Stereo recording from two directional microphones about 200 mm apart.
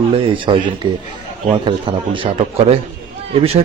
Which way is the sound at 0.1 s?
25° right (ahead or behind).